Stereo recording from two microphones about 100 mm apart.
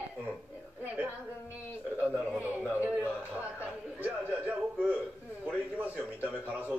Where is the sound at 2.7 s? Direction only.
15° right (ahead or behind).